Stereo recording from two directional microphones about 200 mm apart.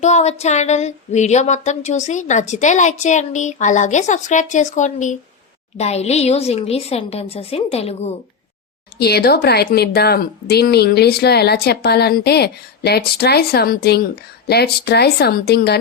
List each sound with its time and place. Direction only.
0.0 s a woman's voice: 35° left (ahead or behind)
9.0 s speech: 50° left (ahead or behind)